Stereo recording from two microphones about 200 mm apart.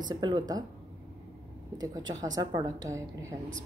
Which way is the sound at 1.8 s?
20° right (ahead or behind).